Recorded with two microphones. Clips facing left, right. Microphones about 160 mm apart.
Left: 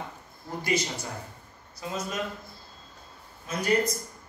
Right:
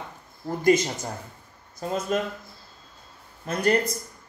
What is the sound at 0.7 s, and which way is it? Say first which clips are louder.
Speech: right 9 dB; 50° right (ahead or behind).